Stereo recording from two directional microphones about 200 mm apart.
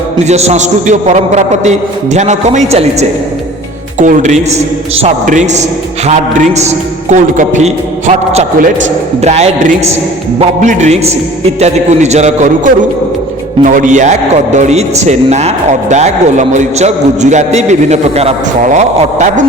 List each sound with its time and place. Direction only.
0.3 s a man's voice: 35° right (ahead or behind)